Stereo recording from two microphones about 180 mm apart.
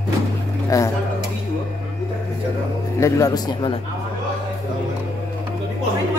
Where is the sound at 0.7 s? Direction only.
20° left (ahead or behind).